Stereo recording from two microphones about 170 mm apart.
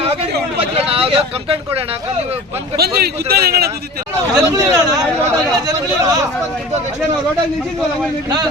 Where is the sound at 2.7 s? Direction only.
65° right (ahead or behind).